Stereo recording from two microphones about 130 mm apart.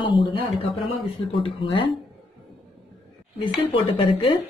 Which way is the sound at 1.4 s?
45° left (ahead or behind).